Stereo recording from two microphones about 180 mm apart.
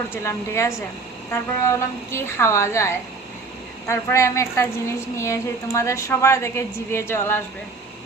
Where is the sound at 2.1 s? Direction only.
15° left (ahead or behind).